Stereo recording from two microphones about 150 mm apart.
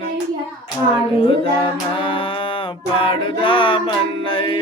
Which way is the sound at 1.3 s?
35° left (ahead or behind).